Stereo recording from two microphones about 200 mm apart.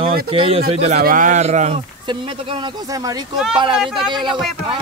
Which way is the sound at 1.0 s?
40° right (ahead or behind).